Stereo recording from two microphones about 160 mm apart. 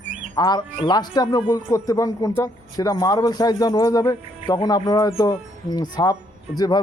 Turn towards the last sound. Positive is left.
turn(degrees=25)  # may be behind; listen again after turning